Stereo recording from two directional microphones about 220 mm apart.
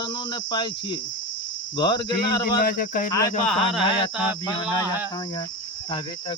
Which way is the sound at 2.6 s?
40° left (ahead or behind).